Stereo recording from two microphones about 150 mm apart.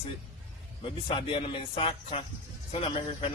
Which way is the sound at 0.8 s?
35° left (ahead or behind).